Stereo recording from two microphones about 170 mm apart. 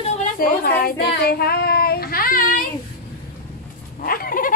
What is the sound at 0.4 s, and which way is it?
Speech, 60° left (ahead or behind).